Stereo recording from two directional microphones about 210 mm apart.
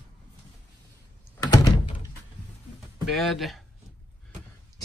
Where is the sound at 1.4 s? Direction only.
20° left (ahead or behind).